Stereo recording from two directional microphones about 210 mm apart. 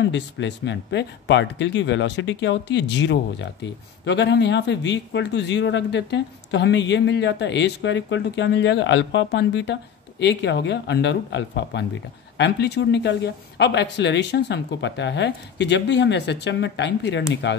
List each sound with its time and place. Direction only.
0.0 s speech: 55° left (ahead or behind)